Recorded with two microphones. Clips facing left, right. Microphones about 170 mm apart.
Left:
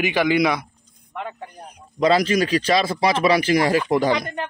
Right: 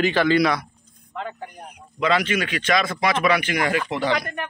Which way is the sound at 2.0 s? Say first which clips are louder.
Left 4 dB; 35° left (ahead or behind).